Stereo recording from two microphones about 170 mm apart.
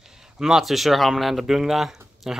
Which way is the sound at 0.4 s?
Centre (ahead or behind).